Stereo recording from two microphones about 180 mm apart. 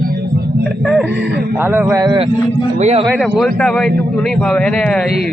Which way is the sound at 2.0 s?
20° right (ahead or behind).